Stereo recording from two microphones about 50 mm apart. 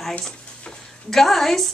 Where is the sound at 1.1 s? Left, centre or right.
Centre.